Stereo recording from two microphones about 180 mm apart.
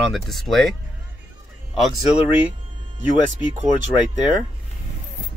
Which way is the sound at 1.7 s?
5° right (ahead or behind).